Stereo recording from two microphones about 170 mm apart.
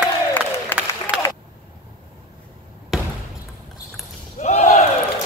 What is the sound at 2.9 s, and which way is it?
Basketball bounce, 5° right (ahead or behind).